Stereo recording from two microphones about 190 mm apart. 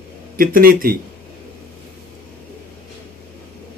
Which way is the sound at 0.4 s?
50° right (ahead or behind).